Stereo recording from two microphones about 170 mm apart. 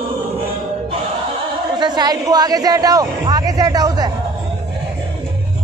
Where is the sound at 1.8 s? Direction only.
25° right (ahead or behind).